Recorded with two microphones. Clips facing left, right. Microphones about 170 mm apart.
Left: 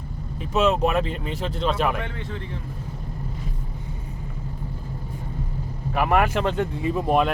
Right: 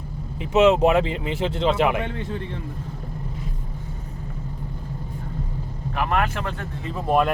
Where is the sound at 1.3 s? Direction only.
25° right (ahead or behind).